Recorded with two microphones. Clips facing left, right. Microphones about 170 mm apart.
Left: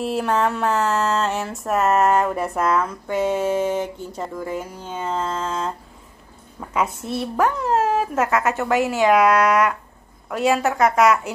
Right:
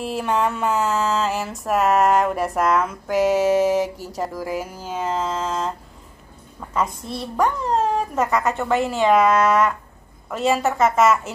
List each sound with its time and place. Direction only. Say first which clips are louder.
0.0 s speech: left 1 dB; centre (ahead or behind)
6.7 s speech: left 1 dB; 5° left (ahead or behind)